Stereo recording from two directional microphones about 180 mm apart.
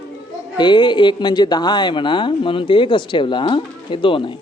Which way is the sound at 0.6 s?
25° left (ahead or behind).